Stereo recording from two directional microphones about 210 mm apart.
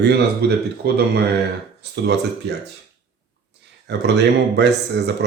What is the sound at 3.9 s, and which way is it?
A man's voice, 55° right (ahead or behind).